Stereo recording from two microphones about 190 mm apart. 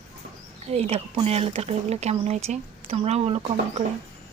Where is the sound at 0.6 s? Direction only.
35° right (ahead or behind).